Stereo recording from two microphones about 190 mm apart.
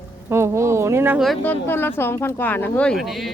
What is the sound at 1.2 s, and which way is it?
Speech, 5° left (ahead or behind).